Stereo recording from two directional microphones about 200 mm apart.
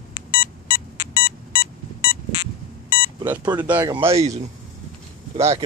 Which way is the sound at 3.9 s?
30° right (ahead or behind).